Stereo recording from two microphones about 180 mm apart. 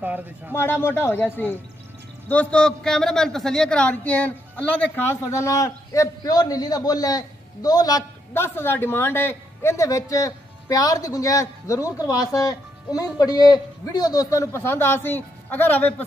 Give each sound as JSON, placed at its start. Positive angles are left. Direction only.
{"t": 0.0, "sound": "a man's voice", "side_deg": -10}
{"t": 0.6, "sound": "a man's voice", "side_deg": 10}